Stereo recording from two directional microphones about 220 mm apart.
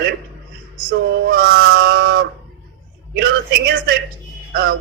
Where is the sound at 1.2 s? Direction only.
45° right (ahead or behind).